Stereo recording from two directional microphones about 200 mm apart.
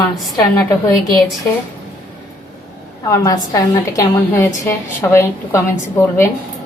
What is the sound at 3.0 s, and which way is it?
A woman's voice, 15° left (ahead or behind).